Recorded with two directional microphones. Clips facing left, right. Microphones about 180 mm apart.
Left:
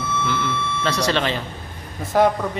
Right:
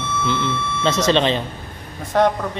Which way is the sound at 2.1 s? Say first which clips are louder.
Even; 5° left (ahead or behind).